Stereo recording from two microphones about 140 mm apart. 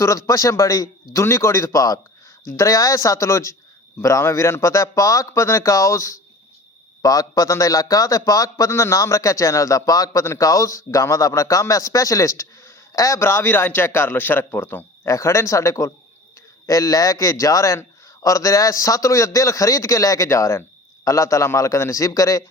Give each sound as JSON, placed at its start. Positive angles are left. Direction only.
{"t": 0.0, "sound": "a man's voice", "side_deg": 20}